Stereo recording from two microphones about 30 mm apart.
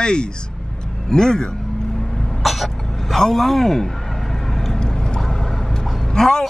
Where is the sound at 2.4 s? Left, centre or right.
Centre.